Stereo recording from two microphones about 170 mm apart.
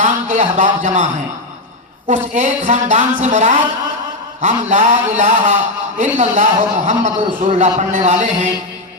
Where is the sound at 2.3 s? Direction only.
45° right (ahead or behind).